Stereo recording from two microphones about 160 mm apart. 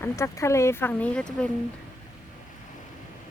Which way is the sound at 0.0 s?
20° left (ahead or behind).